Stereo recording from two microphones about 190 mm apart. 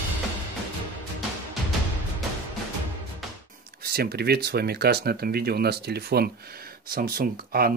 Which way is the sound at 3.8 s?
55° right (ahead or behind).